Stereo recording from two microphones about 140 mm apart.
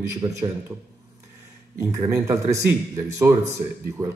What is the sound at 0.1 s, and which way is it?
Speech, 20° right (ahead or behind).